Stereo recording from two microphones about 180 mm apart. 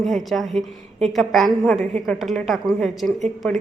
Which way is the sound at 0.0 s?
Centre (ahead or behind).